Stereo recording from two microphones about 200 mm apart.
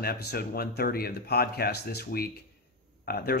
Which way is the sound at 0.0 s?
50° left (ahead or behind).